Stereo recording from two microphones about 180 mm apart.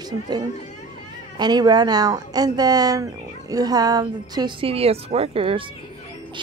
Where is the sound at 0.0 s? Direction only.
25° right (ahead or behind).